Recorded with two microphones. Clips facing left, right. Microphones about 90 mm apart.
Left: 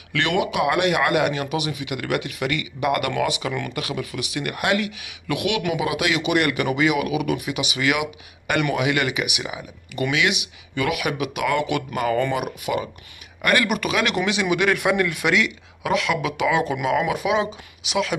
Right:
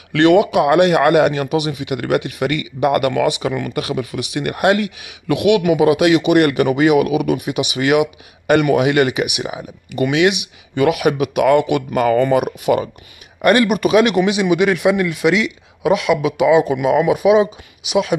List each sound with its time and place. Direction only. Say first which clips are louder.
0.1 s speech: right 10 dB; 30° right (ahead or behind)
12.3 s speech: right 9 dB; 50° right (ahead or behind)
13.4 s speech: right 7 dB; 30° right (ahead or behind)
14.1 s speech: right 7 dB; 15° right (ahead or behind)
14.8 s speech: right 5 dB; 5° right (ahead or behind)